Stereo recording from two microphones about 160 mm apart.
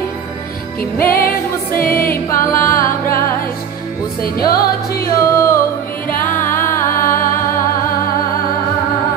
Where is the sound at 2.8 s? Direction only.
15° left (ahead or behind).